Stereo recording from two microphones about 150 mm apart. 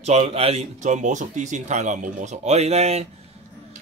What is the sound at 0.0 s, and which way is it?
Speech, 45° right (ahead or behind).